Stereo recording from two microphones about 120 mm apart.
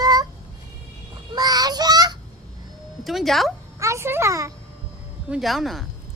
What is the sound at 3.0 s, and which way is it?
Speech, centre (ahead or behind).